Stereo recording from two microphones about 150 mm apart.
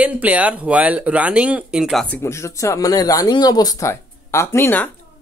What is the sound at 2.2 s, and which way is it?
Speech, 20° left (ahead or behind).